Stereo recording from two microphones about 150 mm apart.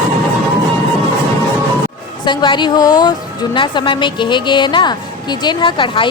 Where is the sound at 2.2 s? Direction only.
30° left (ahead or behind).